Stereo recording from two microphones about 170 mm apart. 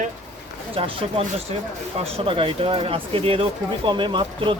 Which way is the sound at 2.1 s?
30° right (ahead or behind).